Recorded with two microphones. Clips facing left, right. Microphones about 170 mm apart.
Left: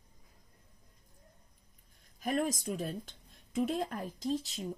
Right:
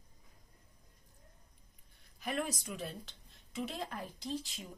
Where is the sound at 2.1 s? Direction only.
45° left (ahead or behind).